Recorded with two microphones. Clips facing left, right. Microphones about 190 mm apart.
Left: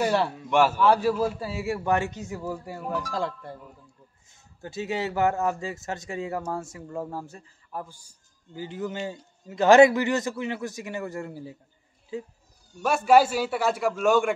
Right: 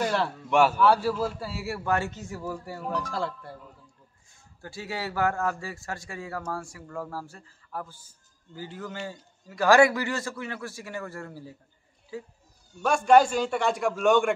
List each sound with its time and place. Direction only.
0.0 s a man's voice: 10° left (ahead or behind)
0.8 s a man's voice: 15° left (ahead or behind)
4.3 s speech: 20° left (ahead or behind)
12.8 s a man's voice: 5° left (ahead or behind)